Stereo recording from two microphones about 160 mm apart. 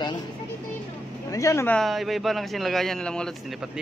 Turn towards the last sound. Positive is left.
turn(degrees=0)  # may be behind; listen again after turning